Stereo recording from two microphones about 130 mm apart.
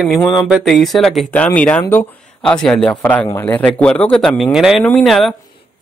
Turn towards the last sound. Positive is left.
turn(degrees=0)  # may be behind; listen again after turning